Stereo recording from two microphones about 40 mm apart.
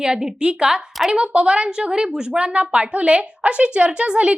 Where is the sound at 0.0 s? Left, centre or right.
Centre.